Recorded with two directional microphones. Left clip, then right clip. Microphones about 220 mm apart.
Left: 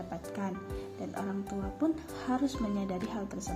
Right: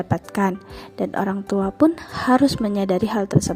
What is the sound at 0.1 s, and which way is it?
A woman's voice, 50° right (ahead or behind).